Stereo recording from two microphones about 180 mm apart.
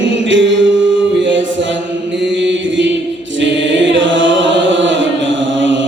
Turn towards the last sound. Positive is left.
turn(degrees=-90)